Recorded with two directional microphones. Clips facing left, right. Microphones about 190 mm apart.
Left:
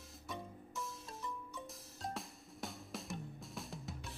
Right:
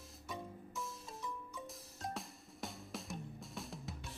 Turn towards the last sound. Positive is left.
turn(degrees=0)  # may be behind; listen again after turning